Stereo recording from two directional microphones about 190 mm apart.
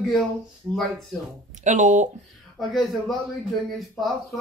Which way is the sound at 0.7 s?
Centre (ahead or behind).